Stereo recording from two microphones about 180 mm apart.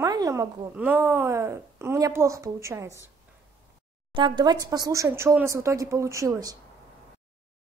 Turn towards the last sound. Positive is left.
turn(degrees=-20)  # may be behind; listen again after turning